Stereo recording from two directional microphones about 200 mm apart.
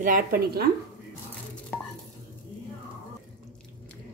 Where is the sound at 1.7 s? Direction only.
5° left (ahead or behind).